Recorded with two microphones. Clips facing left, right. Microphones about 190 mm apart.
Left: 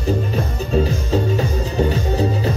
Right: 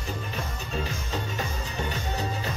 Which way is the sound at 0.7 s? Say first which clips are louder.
Left 14 dB; 35° left (ahead or behind).